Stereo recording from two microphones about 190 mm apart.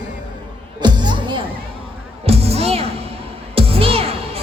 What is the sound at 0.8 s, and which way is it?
Music, 25° right (ahead or behind).